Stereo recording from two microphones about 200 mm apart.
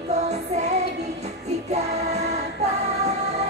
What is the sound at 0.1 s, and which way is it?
Music, 35° right (ahead or behind).